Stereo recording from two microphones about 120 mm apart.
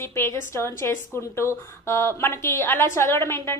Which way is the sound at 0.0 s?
20° left (ahead or behind).